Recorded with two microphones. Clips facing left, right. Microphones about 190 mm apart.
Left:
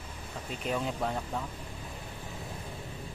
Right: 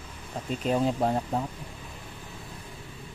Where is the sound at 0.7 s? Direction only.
35° right (ahead or behind).